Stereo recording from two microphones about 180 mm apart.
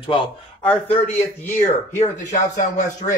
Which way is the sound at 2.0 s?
45° left (ahead or behind).